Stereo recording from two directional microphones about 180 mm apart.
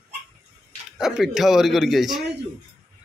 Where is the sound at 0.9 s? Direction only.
Centre (ahead or behind).